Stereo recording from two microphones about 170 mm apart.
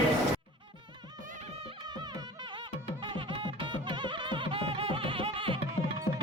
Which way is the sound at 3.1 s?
30° right (ahead or behind).